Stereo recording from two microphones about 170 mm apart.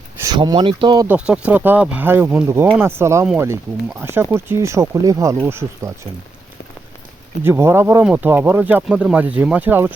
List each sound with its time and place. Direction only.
0.2 s speech: 20° right (ahead or behind)
1.0 s speech: 5° right (ahead or behind)
7.4 s speech: 15° right (ahead or behind)